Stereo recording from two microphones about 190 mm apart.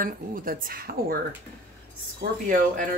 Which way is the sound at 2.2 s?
55° right (ahead or behind).